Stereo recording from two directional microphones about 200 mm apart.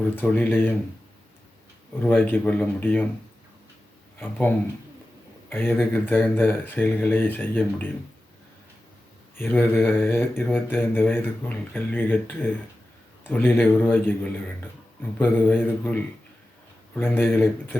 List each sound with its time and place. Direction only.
0.0 s mantra: 10° left (ahead or behind)
2.0 s mantra: 10° left (ahead or behind)
4.2 s mantra: 10° left (ahead or behind)
9.3 s mantra: 10° left (ahead or behind)
16.9 s mantra: 10° left (ahead or behind)